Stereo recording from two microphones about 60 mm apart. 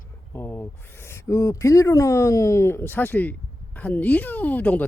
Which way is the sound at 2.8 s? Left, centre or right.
Left.